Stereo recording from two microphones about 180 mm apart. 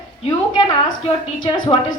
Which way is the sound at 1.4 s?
25° left (ahead or behind).